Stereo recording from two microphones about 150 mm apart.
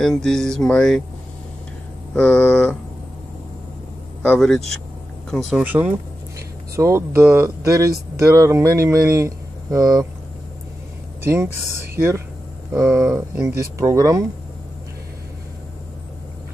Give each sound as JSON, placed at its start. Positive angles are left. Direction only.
{"t": 0.0, "sound": "speech", "side_deg": 5}
{"t": 2.1, "sound": "speech", "side_deg": 5}
{"t": 4.2, "sound": "speech", "side_deg": 5}
{"t": 11.2, "sound": "speech", "side_deg": -15}